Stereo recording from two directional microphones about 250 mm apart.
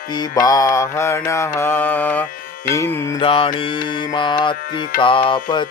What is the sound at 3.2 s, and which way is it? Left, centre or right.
Mantra, left.